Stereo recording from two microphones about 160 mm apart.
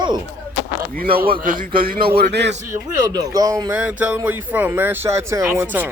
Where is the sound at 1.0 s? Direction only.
65° right (ahead or behind).